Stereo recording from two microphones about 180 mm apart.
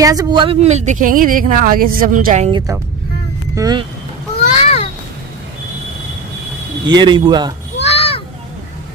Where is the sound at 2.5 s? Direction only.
15° right (ahead or behind).